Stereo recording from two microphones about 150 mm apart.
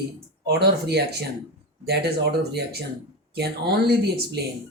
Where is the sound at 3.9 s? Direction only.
90° right.